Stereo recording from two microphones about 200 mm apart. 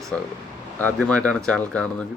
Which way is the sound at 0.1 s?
5° left (ahead or behind).